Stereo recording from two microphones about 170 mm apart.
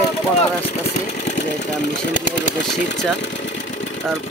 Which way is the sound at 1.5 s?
90° left.